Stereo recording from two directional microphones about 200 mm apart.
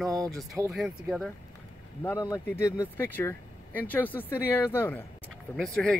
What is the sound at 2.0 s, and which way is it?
Speech, 15° left (ahead or behind).